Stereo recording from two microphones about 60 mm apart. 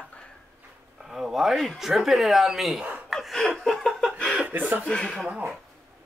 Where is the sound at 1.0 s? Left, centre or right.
Centre.